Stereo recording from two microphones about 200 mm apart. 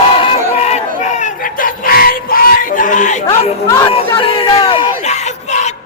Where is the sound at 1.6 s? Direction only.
45° left (ahead or behind).